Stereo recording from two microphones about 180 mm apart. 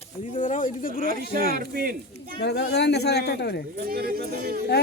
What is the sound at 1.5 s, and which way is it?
Speech, 55° right (ahead or behind).